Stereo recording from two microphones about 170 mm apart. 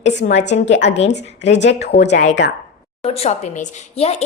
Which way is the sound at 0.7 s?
90° left.